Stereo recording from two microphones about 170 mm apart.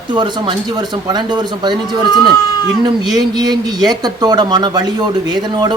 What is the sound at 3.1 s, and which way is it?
Speech, 25° right (ahead or behind).